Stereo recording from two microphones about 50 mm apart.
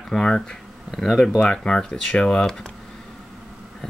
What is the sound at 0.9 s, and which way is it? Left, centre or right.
Speech, centre.